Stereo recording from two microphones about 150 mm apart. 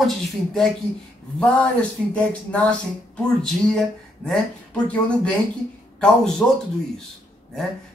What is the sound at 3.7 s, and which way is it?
Speech, 5° left (ahead or behind).